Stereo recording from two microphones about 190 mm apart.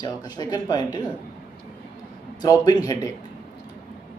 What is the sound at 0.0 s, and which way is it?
Speech, 20° left (ahead or behind).